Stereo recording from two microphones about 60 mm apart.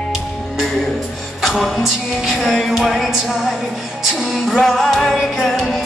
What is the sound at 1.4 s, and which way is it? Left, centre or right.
Music, centre.